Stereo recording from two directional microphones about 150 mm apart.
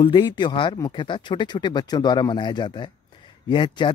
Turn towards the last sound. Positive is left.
turn(degrees=30)  # may be behind; listen again after turning